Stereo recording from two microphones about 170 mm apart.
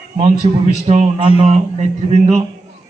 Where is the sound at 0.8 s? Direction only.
45° right (ahead or behind).